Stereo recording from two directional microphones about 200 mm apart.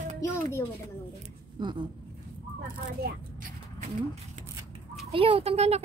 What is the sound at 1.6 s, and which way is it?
Speech, 25° right (ahead or behind).